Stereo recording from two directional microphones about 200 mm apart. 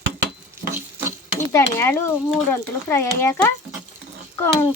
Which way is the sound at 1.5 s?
10° left (ahead or behind).